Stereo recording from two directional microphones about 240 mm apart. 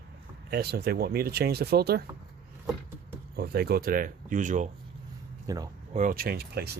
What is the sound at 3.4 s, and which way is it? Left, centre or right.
Speech, right.